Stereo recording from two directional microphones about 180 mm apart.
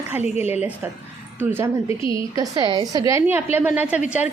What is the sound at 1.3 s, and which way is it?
Speech, 10° right (ahead or behind).